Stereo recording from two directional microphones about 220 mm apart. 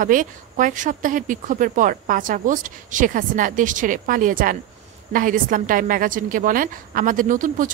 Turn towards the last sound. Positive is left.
turn(degrees=-35)  # may be behind; listen again after turning